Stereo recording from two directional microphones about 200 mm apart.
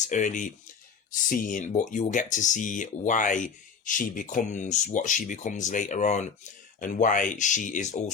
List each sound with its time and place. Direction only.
0.0 s speech: 35° left (ahead or behind)